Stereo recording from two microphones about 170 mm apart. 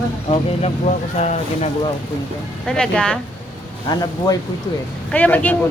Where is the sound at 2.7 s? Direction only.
5° left (ahead or behind).